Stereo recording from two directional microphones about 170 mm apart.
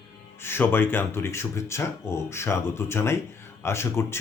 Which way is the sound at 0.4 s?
10° left (ahead or behind).